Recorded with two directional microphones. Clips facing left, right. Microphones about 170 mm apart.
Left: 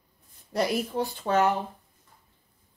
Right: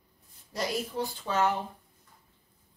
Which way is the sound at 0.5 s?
55° left (ahead or behind).